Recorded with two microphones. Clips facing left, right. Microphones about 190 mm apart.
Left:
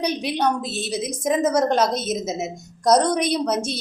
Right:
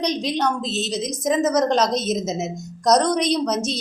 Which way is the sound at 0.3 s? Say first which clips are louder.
Even; 10° left (ahead or behind).